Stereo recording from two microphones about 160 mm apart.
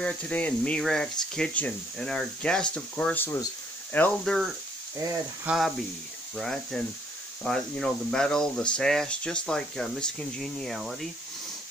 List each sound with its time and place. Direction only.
0.0 s speech: 10° left (ahead or behind)
4.9 s sizzle: 20° right (ahead or behind)
5.5 s speech: centre (ahead or behind)